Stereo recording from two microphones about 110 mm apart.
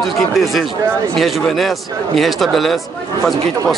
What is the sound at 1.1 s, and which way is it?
Speech, centre (ahead or behind).